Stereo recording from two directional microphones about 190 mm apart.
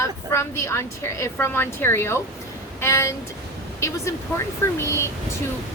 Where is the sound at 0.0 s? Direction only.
15° left (ahead or behind).